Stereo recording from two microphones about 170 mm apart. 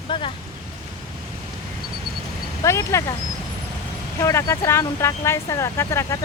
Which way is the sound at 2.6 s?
15° left (ahead or behind).